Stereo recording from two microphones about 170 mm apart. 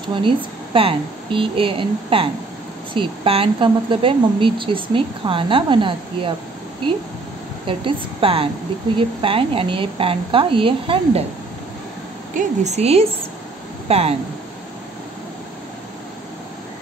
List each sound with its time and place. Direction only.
0.7 s a woman's voice: 30° right (ahead or behind)
7.6 s a woman's voice: 30° right (ahead or behind)
12.4 s a woman's voice: 40° right (ahead or behind)